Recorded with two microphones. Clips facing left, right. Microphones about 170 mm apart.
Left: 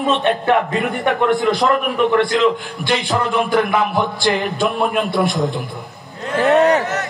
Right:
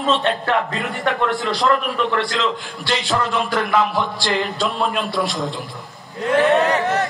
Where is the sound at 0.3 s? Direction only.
55° left (ahead or behind).